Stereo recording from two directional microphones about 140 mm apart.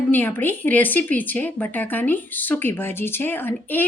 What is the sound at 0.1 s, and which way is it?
Speech, 15° left (ahead or behind).